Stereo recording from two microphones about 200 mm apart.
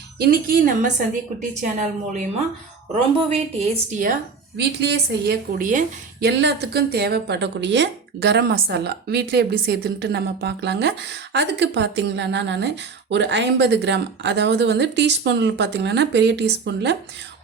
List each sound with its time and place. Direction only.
0.2 s a woman's voice: 50° right (ahead or behind)
3.8 s a woman's voice: 40° right (ahead or behind)
4.5 s a woman's voice: 55° right (ahead or behind)